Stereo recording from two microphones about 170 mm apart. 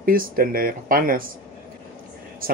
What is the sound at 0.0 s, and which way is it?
Speech, 60° right (ahead or behind).